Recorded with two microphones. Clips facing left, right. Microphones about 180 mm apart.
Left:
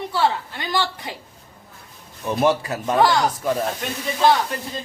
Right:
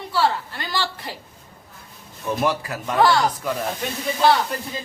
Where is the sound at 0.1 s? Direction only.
20° left (ahead or behind).